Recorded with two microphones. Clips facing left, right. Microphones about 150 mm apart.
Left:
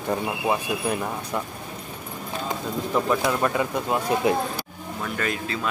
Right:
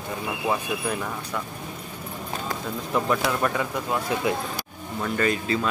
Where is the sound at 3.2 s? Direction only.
20° left (ahead or behind).